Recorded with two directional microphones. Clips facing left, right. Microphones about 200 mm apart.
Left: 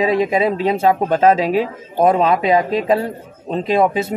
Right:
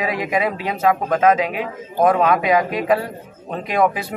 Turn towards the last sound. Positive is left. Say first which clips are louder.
# left 3 dB
turn(degrees=25)  # may be behind; listen again after turning